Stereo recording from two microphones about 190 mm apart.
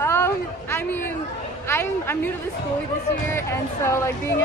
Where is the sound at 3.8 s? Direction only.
15° left (ahead or behind).